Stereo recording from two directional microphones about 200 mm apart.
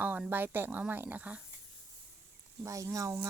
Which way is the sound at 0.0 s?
10° right (ahead or behind).